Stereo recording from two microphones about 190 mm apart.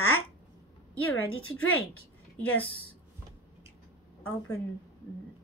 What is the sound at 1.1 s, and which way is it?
Speech, 90° left.